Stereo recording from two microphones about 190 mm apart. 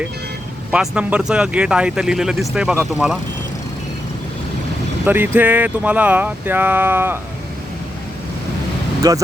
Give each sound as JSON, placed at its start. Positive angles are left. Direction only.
{"t": 0.7, "sound": "speech", "side_deg": -5}
{"t": 5.0, "sound": "speech", "side_deg": -10}
{"t": 9.0, "sound": "speech", "side_deg": -15}